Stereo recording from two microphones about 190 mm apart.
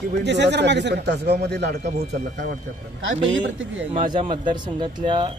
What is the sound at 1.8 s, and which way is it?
Speech, 40° right (ahead or behind).